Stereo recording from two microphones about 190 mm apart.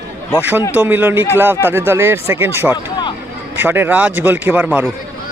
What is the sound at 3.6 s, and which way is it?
A man's voice, 10° right (ahead or behind).